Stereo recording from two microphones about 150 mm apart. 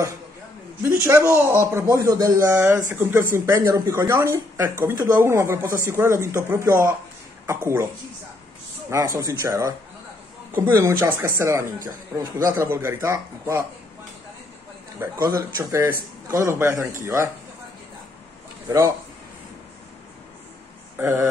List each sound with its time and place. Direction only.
0.8 s speech: 20° right (ahead or behind)
8.9 s speech: 20° right (ahead or behind)
15.2 s speech: 25° right (ahead or behind)
18.7 s speech: 25° right (ahead or behind)
21.0 s speech: 20° right (ahead or behind)